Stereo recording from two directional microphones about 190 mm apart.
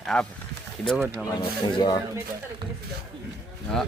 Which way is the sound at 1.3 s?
25° left (ahead or behind).